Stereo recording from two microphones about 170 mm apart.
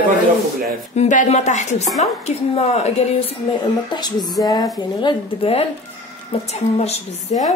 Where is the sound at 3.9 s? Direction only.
25° left (ahead or behind).